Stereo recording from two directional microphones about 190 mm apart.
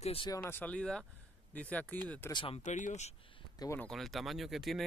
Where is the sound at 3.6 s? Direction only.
15° left (ahead or behind).